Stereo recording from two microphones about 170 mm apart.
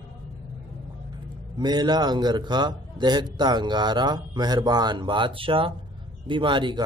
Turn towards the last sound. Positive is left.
turn(degrees=-30)  # may be behind; listen again after turning